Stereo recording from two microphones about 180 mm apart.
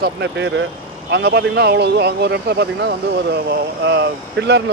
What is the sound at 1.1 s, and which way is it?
Speech, 65° right (ahead or behind).